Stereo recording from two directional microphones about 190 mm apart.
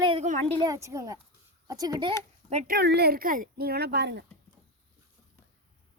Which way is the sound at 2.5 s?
50° right (ahead or behind).